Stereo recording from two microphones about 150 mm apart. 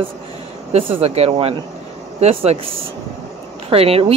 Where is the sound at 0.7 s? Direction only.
40° right (ahead or behind).